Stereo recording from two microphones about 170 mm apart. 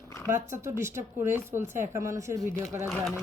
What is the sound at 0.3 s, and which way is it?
Speech, 15° right (ahead or behind).